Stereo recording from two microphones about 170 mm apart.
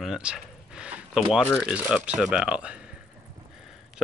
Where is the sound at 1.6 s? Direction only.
5° right (ahead or behind).